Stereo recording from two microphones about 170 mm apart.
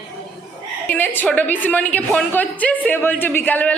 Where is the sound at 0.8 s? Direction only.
10° left (ahead or behind).